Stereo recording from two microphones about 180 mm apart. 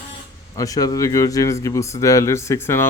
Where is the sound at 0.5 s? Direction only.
20° left (ahead or behind).